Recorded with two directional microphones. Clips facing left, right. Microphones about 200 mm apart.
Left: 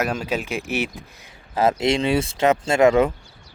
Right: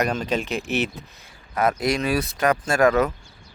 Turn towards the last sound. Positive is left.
turn(degrees=25)  # may be behind; listen again after turning